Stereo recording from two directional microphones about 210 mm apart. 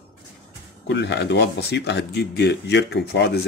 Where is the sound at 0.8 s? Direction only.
55° left (ahead or behind).